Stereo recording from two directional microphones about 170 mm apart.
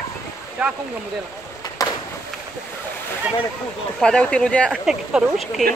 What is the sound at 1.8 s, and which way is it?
Skateboard, 20° left (ahead or behind).